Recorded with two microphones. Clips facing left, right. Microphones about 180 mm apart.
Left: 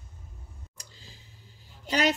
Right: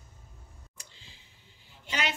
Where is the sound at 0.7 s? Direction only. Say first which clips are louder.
Left 3 dB; 40° left (ahead or behind).